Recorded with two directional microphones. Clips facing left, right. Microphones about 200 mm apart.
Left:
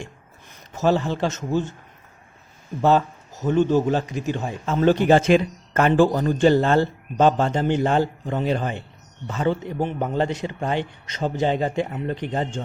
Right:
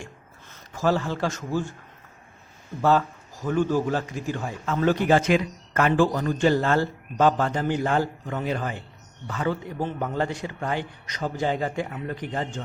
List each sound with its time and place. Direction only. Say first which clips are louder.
0.5 s a man's voice: left 3 dB; 20° left (ahead or behind)
2.8 s a man's voice: left 3 dB; 20° left (ahead or behind)